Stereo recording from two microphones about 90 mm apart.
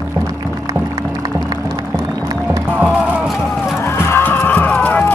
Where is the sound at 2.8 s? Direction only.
15° right (ahead or behind).